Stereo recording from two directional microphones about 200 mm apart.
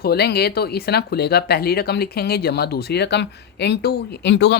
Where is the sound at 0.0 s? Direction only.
55° left (ahead or behind).